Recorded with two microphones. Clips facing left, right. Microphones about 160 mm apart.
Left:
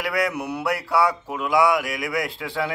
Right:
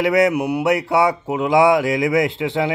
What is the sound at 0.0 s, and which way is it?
Speech, 25° right (ahead or behind).